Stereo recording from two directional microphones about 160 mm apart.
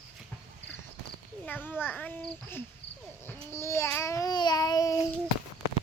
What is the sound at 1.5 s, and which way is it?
A child's voice, 10° left (ahead or behind).